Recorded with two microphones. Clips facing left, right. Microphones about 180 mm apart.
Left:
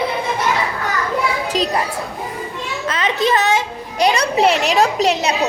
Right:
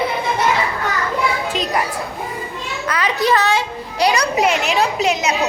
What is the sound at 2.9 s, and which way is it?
Children playing, 25° left (ahead or behind).